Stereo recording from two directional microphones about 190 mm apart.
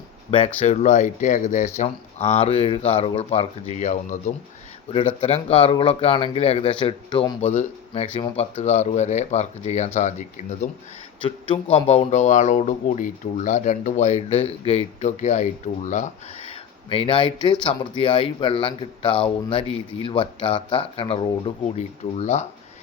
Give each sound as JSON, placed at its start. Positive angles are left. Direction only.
{"t": 0.3, "sound": "speech", "side_deg": 30}